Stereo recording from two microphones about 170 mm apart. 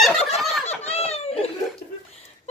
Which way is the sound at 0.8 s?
35° left (ahead or behind).